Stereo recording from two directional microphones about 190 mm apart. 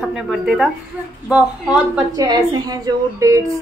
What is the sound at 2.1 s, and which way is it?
A woman's voice, 20° right (ahead or behind).